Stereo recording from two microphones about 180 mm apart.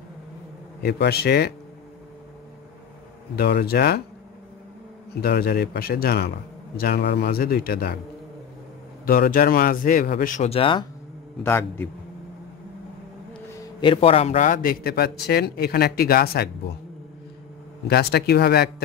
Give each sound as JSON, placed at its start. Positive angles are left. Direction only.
{"t": 0.8, "sound": "a man's voice", "side_deg": 65}
{"t": 3.3, "sound": "a man's voice", "side_deg": 60}
{"t": 5.1, "sound": "a man's voice", "side_deg": 60}
{"t": 9.0, "sound": "speech", "side_deg": 55}
{"t": 11.4, "sound": "a man's voice", "side_deg": 10}
{"t": 13.6, "sound": "a man's voice", "side_deg": 25}
{"t": 17.8, "sound": "a man's voice", "side_deg": 60}